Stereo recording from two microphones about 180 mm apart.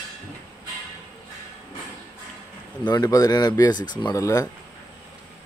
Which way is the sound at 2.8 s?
20° left (ahead or behind).